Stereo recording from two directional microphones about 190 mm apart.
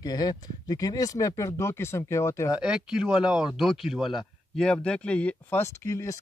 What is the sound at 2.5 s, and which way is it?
Speech, 5° right (ahead or behind).